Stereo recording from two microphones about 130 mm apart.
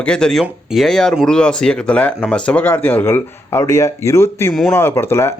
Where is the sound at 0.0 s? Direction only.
5° left (ahead or behind).